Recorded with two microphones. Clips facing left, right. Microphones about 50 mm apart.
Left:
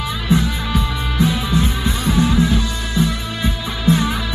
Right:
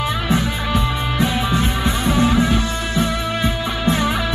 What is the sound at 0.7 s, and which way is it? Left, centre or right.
Music, right.